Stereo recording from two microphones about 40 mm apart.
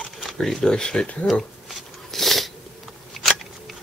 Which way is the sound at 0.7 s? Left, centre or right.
Left.